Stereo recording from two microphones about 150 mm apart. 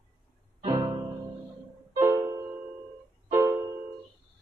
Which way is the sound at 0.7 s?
30° right (ahead or behind).